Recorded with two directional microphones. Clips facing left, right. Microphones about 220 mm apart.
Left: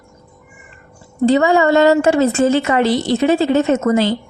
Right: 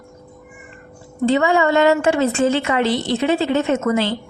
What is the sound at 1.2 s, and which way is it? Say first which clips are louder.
A woman's voice: left 4 dB; 40° left (ahead or behind).